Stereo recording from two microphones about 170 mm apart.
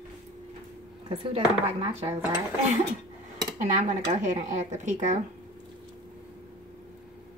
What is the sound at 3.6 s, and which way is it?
Speech, 45° right (ahead or behind).